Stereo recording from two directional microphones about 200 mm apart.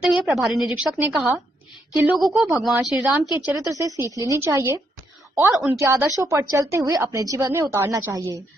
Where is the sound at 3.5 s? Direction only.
15° right (ahead or behind).